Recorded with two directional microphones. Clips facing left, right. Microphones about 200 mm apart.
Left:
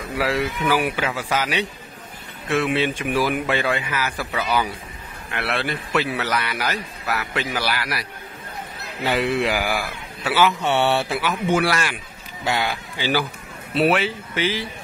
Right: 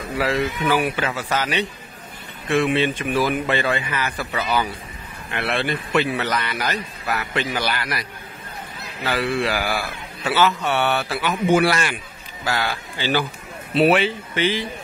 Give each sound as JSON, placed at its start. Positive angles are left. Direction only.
{"t": 0.2, "sound": "a man's voice", "side_deg": 10}
{"t": 9.0, "sound": "a man's voice", "side_deg": 20}
{"t": 10.6, "sound": "speech", "side_deg": 25}
{"t": 11.5, "sound": "a man's voice", "side_deg": 0}
{"t": 12.4, "sound": "a man's voice", "side_deg": 20}
{"t": 13.7, "sound": "a man's voice", "side_deg": 0}